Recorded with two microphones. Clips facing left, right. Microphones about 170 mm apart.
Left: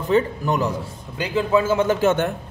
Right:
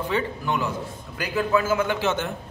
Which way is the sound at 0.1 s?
40° left (ahead or behind).